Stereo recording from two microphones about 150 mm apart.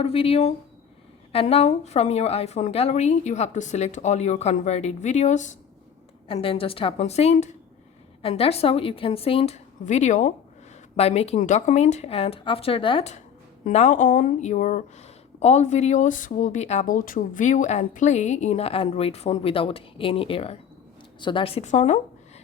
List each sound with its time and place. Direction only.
0.0 s a woman's voice: 40° left (ahead or behind)
6.2 s a woman's voice: 35° left (ahead or behind)
9.8 s speech: 50° left (ahead or behind)
10.9 s speech: 45° left (ahead or behind)
13.7 s speech: 55° left (ahead or behind)